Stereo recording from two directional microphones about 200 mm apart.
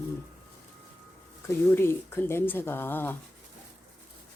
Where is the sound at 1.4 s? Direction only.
10° left (ahead or behind).